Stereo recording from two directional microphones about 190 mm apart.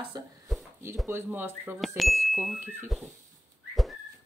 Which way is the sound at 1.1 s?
10° right (ahead or behind).